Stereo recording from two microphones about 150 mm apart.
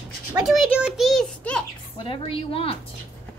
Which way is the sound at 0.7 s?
5° right (ahead or behind).